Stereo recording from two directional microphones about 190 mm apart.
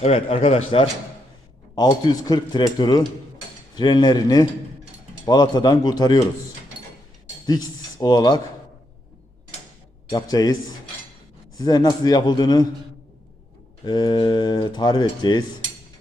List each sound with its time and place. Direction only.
0.0 s a man's voice: 30° left (ahead or behind)
7.4 s speech: 20° left (ahead or behind)
10.1 s speech: 20° left (ahead or behind)
13.8 s speech: 25° left (ahead or behind)